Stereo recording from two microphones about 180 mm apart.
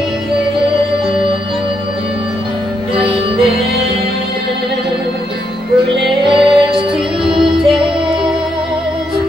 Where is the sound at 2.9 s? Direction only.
30° right (ahead or behind).